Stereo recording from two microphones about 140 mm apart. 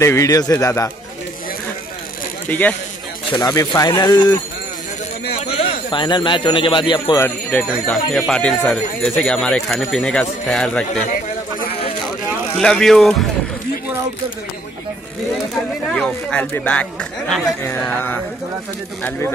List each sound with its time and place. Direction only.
0.0 s a man's voice: 20° left (ahead or behind)
2.4 s speech: 10° left (ahead or behind)
3.3 s a man's voice: 25° left (ahead or behind)
5.6 s a man's voice: 40° left (ahead or behind)
7.2 s speech: 10° left (ahead or behind)
12.5 s speech: 5° left (ahead or behind)
15.5 s speech: 5° left (ahead or behind)
17.8 s speech: 15° left (ahead or behind)